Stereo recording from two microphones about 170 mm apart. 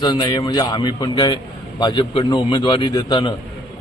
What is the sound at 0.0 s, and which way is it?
Speech, 25° left (ahead or behind).